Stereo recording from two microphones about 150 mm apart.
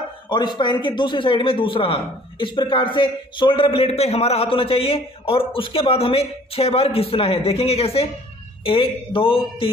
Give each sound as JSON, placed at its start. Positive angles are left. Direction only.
{"t": 0.3, "sound": "a man's voice", "side_deg": 30}